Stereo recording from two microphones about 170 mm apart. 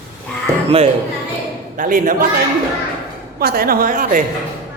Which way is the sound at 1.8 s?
55° right (ahead or behind).